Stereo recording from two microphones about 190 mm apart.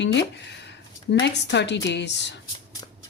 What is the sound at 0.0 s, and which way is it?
Speech, 70° left (ahead or behind).